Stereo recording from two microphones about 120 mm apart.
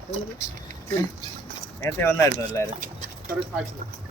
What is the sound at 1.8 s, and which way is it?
Speech, 25° left (ahead or behind).